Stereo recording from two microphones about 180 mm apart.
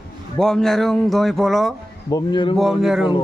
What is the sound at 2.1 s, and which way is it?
Speech, 25° left (ahead or behind).